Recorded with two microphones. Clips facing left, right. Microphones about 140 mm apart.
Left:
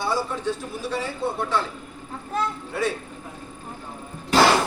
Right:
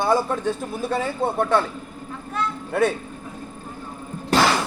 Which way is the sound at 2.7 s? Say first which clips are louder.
Right 9 dB; 55° right (ahead or behind).